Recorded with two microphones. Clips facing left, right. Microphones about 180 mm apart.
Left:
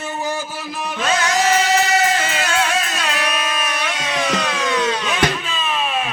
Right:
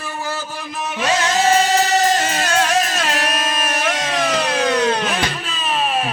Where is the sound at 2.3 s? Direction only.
40° right (ahead or behind); by 5.2 s 60° right (ahead or behind).